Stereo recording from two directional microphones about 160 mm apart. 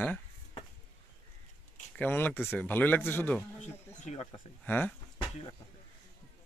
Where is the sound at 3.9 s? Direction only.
45° left (ahead or behind).